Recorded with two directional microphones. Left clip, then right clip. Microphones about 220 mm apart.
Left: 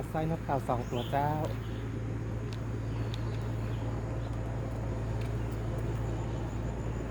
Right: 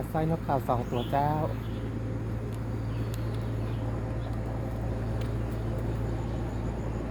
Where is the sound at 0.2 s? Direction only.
30° right (ahead or behind).